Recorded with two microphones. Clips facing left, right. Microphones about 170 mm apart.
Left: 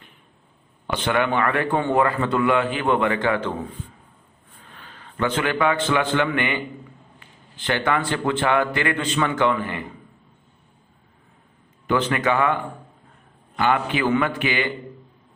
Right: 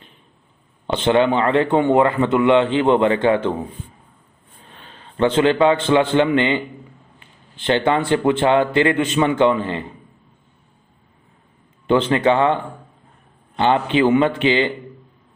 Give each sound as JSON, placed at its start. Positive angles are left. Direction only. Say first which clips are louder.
{"t": 0.9, "sound": "a man's voice", "louder": "right 6 dB", "side_deg": -25}
{"t": 7.6, "sound": "speech", "louder": "right 5 dB", "side_deg": -20}
{"t": 11.9, "sound": "speech", "louder": "right 5 dB", "side_deg": -25}
{"t": 13.6, "sound": "speech", "louder": "right 5 dB", "side_deg": -25}